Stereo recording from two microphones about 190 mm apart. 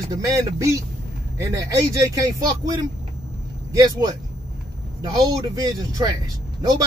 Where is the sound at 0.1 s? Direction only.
15° right (ahead or behind).